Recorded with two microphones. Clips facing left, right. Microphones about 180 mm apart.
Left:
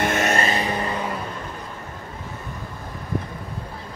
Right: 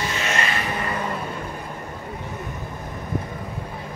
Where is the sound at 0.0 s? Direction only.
50° left (ahead or behind).